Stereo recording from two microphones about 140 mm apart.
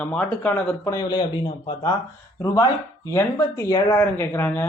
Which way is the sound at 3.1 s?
20° left (ahead or behind).